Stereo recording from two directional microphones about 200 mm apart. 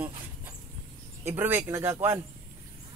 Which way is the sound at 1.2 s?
10° right (ahead or behind).